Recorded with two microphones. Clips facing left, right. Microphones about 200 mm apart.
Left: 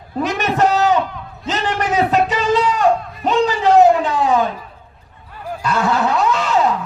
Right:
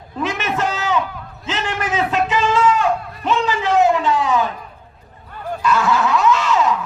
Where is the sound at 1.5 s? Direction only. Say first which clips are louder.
Left 3 dB; 40° left (ahead or behind).